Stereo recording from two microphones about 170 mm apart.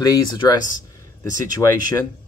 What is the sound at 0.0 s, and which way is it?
Speech, 25° left (ahead or behind).